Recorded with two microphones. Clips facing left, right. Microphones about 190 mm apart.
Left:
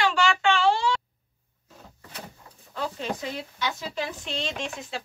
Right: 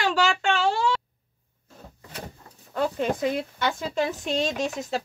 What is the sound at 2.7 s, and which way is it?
Speech, 50° right (ahead or behind).